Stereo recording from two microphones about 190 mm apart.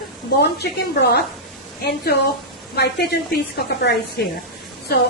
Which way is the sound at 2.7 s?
60° left (ahead or behind).